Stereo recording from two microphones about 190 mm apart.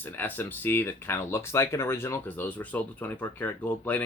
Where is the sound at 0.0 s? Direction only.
10° left (ahead or behind).